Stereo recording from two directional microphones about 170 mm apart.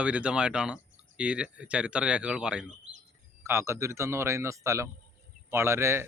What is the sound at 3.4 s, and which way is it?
Speech, 15° right (ahead or behind).